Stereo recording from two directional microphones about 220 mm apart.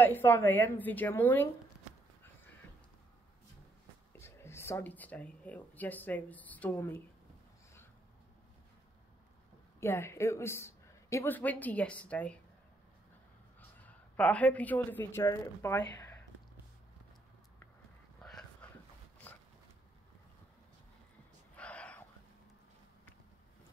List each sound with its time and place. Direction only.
0.0 s speech: 10° left (ahead or behind)
4.2 s speech: 10° left (ahead or behind)
9.8 s speech: 10° left (ahead or behind)
13.6 s speech: 5° left (ahead or behind)
18.2 s a sound: 5° left (ahead or behind)
19.2 s dog: 5° left (ahead or behind)
21.5 s a sound: 5° left (ahead or behind)